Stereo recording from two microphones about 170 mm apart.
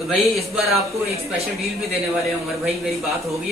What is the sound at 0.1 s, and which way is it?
Speech, centre (ahead or behind).